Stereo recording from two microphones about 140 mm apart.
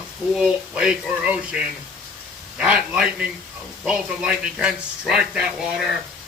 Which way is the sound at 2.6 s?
5° right (ahead or behind).